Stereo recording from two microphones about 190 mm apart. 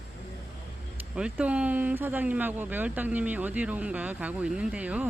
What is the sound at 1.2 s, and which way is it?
Speech, 5° right (ahead or behind).